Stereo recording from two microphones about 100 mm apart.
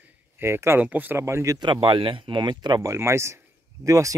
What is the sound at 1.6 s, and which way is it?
Speech, 55° right (ahead or behind).